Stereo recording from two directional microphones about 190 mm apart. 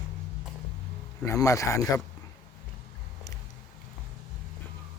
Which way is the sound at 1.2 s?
15° left (ahead or behind).